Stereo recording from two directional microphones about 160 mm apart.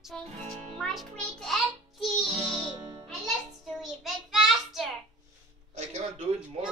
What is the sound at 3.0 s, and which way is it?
Child singing, centre (ahead or behind).